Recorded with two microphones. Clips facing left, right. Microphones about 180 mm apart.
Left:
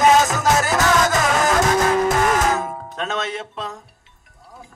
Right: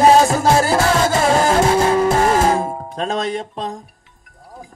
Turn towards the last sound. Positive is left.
turn(degrees=-35)  # may be behind; listen again after turning